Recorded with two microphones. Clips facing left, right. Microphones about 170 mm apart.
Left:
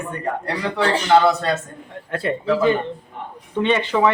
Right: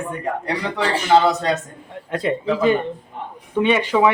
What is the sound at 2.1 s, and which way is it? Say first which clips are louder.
Speech: even; 15° right (ahead or behind).